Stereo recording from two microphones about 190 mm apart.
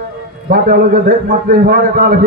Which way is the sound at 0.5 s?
50° right (ahead or behind).